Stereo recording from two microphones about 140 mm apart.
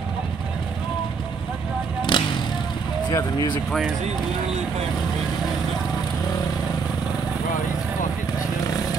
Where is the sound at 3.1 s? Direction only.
30° left (ahead or behind).